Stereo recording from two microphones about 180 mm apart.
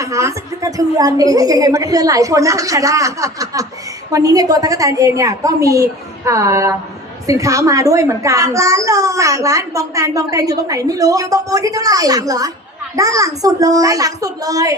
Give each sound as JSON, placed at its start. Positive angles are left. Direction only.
{"t": 0.0, "sound": "a child's voice", "side_deg": -15}